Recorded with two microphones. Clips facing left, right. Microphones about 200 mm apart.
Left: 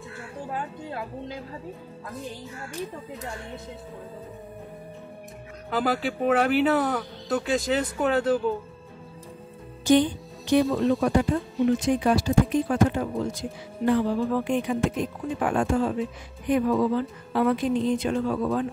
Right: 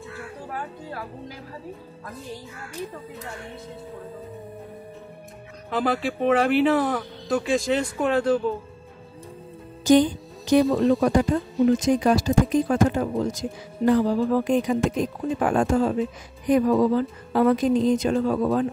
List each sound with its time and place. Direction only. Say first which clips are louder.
0.5 s speech: left 2 dB; 20° left (ahead or behind)
5.7 s speech: right 1 dB; centre (ahead or behind)
9.8 s music: right 3 dB; 40° right (ahead or behind)
10.7 s speech: right 3 dB; centre (ahead or behind)
11.0 s speech: right 2 dB; 40° right (ahead or behind)